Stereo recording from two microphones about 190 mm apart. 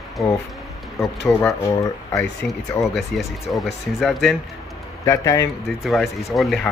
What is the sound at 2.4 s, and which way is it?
Speech, 55° left (ahead or behind).